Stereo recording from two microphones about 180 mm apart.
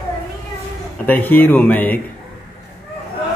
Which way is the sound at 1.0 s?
10° left (ahead or behind).